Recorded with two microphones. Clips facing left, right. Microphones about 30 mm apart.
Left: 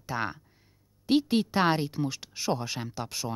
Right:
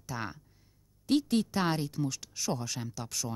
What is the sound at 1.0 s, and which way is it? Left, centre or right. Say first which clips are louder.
Speech: left 3 dB; left.